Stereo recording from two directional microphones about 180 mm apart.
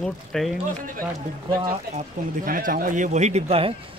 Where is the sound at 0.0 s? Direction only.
Centre (ahead or behind).